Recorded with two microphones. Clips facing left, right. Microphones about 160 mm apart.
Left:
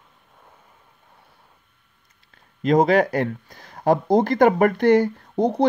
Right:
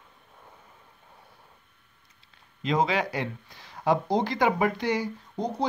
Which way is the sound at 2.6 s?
50° left (ahead or behind).